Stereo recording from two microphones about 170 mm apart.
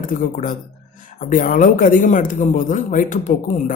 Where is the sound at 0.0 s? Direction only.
50° left (ahead or behind).